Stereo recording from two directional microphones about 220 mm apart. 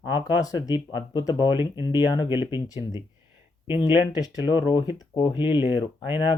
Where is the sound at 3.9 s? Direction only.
20° left (ahead or behind).